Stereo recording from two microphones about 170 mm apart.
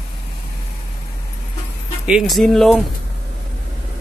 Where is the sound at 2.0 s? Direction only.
Centre (ahead or behind).